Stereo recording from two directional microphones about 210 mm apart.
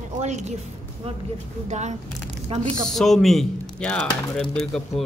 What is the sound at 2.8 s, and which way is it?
Speech, centre (ahead or behind).